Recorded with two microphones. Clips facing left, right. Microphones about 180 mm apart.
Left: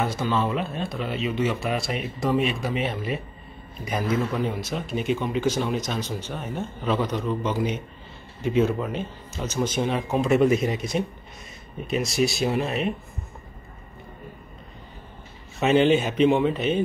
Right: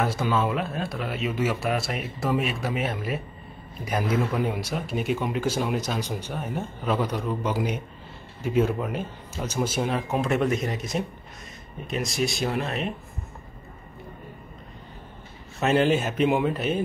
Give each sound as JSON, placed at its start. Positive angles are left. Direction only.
{"t": 0.0, "sound": "a man's voice", "side_deg": -5}
{"t": 15.6, "sound": "a man's voice", "side_deg": 0}